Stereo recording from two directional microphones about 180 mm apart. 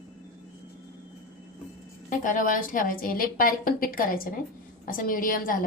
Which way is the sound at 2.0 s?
50° left (ahead or behind).